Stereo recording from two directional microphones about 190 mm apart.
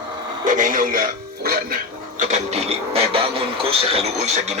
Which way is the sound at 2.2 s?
35° right (ahead or behind).